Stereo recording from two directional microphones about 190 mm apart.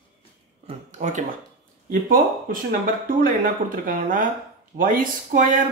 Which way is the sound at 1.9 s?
45° right (ahead or behind).